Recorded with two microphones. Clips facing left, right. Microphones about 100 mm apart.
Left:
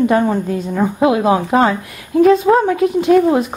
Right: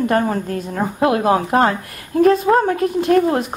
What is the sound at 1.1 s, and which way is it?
Speech, 10° left (ahead or behind).